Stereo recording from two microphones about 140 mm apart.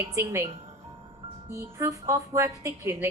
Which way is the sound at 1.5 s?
20° right (ahead or behind).